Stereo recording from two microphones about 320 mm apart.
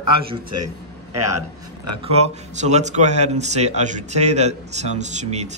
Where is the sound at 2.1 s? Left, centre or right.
Right.